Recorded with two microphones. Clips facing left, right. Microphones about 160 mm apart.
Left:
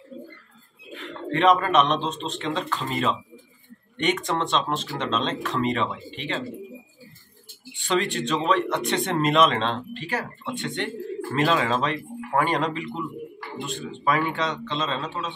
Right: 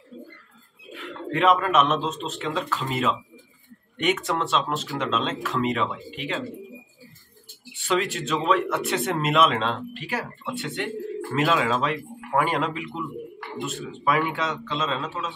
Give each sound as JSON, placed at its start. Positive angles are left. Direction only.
{"t": 0.9, "sound": "speech", "side_deg": -5}
{"t": 7.8, "sound": "speech", "side_deg": -5}